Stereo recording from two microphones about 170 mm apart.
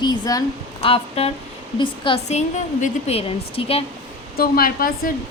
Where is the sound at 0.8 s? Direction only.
35° left (ahead or behind).